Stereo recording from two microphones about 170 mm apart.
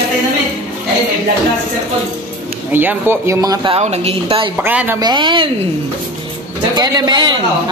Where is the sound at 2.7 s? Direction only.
10° right (ahead or behind).